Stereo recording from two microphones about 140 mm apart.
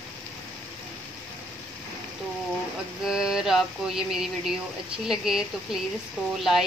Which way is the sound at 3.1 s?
5° right (ahead or behind).